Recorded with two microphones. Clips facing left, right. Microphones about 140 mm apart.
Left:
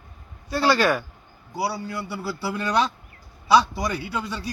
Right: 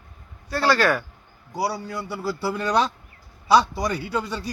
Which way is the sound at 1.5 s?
5° left (ahead or behind).